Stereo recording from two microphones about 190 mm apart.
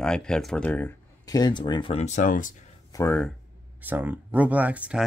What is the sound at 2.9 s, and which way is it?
Speech, 15° left (ahead or behind).